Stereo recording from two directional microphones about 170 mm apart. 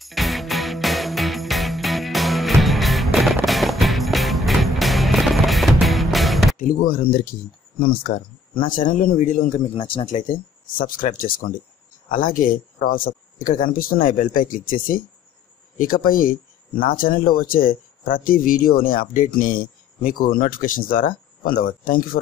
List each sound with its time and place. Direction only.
0.0 s music: centre (ahead or behind)
6.6 s speech: 55° left (ahead or behind)
9.8 s speech: 30° left (ahead or behind)
10.0 s speech: 50° left (ahead or behind)